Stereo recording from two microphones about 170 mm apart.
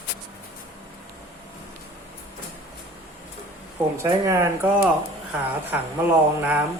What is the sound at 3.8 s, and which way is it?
Speech, 15° right (ahead or behind).